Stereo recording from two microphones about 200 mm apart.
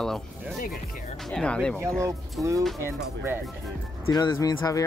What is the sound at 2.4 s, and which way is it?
Speech, 15° right (ahead or behind).